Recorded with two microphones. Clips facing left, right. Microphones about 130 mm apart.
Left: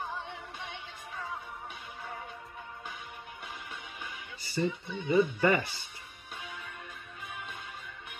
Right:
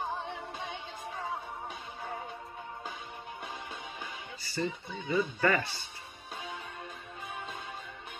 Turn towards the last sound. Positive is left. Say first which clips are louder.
# right 2 dB
turn(degrees=-25)  # may be behind; listen again after turning